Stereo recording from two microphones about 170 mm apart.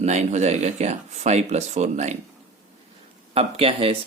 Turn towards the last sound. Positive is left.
turn(degrees=-35)  # may be behind; listen again after turning